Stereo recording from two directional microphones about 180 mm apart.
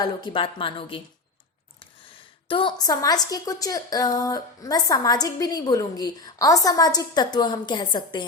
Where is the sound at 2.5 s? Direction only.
30° left (ahead or behind).